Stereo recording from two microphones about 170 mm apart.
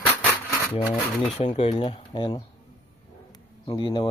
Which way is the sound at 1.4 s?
35° left (ahead or behind).